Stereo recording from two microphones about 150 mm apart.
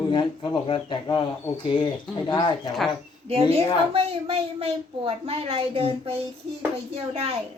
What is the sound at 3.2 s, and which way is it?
A woman's voice, 40° right (ahead or behind).